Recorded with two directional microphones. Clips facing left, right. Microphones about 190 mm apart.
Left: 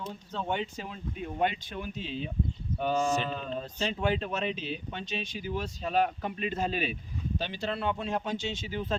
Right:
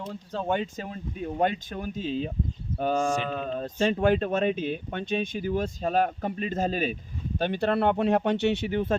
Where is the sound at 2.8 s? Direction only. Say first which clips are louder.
Right 2 dB; 50° right (ahead or behind).